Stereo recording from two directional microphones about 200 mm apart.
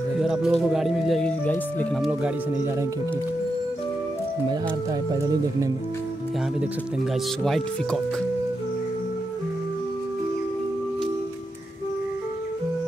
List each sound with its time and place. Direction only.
0.2 s speech: centre (ahead or behind)
2.0 s speech: 5° right (ahead or behind)
5.1 s speech: 20° right (ahead or behind)
7.4 s speech: centre (ahead or behind)